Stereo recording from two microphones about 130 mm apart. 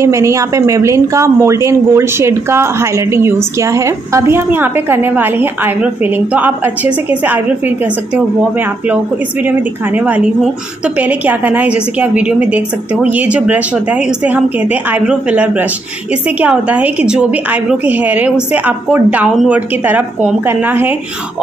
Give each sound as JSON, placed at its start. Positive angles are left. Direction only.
{"t": 0.0, "sound": "a woman's voice", "side_deg": -25}